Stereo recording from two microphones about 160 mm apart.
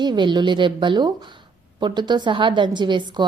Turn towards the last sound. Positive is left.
turn(degrees=-30)  # may be behind; listen again after turning